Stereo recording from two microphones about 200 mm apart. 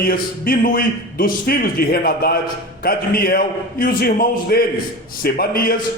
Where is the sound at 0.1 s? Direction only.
45° left (ahead or behind).